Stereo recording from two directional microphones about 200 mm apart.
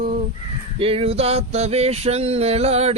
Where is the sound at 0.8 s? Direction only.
30° right (ahead or behind).